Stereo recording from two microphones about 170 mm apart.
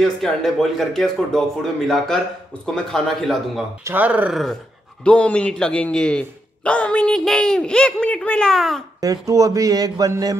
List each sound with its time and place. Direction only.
0.0 s a man's voice: centre (ahead or behind)
3.8 s a man's voice: 10° right (ahead or behind)
9.0 s speech: 20° right (ahead or behind)